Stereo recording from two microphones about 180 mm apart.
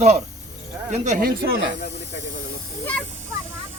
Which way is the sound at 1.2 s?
55° right (ahead or behind).